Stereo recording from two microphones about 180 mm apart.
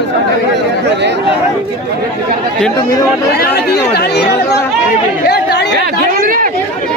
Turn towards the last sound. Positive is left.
turn(degrees=-50)  # may be behind; listen again after turning